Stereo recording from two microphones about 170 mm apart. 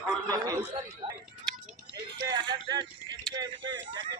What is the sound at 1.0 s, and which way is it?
Speech, 30° right (ahead or behind).